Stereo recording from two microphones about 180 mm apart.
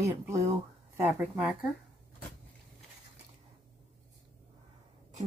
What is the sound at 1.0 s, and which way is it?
Speech, 10° right (ahead or behind).